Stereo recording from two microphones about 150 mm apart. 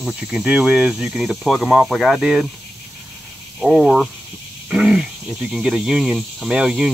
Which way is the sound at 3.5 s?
5° right (ahead or behind).